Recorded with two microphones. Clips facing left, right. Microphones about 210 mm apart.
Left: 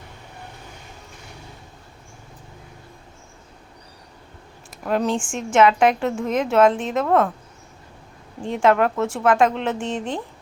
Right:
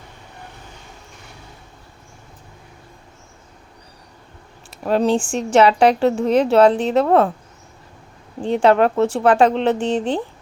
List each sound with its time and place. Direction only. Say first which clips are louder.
4.8 s speech: right 5 dB; 30° right (ahead or behind)
8.4 s speech: right 4 dB; 35° right (ahead or behind)